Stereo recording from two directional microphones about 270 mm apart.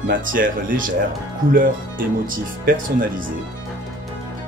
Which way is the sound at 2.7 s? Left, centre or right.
Right.